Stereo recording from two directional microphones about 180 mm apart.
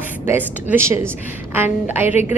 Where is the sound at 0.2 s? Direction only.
10° right (ahead or behind).